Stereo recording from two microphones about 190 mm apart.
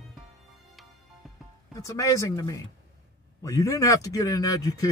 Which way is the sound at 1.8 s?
20° left (ahead or behind).